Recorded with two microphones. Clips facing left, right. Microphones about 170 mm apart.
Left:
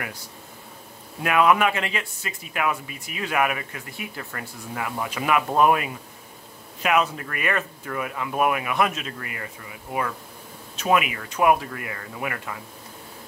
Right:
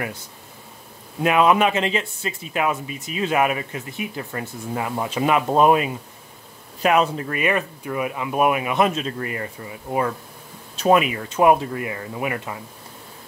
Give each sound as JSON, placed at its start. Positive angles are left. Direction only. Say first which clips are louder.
{"t": 1.2, "sound": "speech", "louder": "right 3 dB", "side_deg": -25}